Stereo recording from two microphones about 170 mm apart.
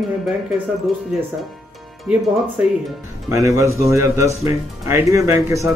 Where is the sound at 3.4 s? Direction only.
20° right (ahead or behind).